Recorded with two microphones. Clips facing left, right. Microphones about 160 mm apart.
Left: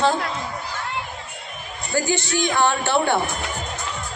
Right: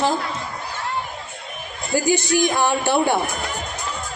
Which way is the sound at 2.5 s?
15° right (ahead or behind).